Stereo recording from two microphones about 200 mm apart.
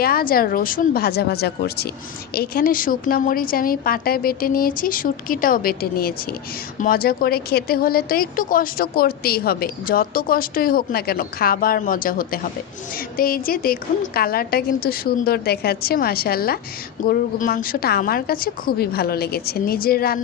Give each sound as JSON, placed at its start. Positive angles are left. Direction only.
{"t": 0.0, "sound": "a woman's voice", "side_deg": 50}